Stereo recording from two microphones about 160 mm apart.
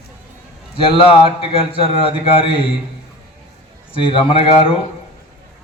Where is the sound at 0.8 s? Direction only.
35° left (ahead or behind).